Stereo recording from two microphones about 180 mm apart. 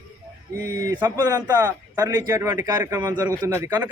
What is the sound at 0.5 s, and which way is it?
A man's voice, 15° right (ahead or behind).